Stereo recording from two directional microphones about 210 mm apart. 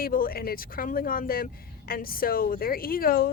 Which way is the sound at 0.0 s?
45° left (ahead or behind).